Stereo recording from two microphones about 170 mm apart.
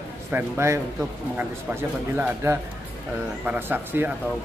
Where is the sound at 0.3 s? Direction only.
15° right (ahead or behind).